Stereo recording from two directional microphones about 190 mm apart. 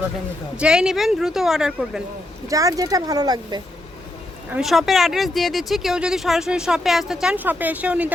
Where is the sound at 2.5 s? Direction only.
15° right (ahead or behind).